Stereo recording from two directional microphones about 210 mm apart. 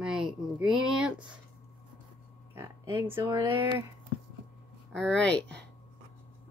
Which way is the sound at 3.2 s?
15° right (ahead or behind).